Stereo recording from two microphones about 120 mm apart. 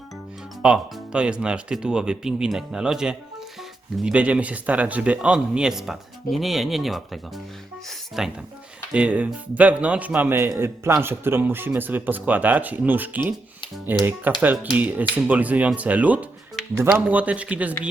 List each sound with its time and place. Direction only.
0.6 s speech: 10° right (ahead or behind)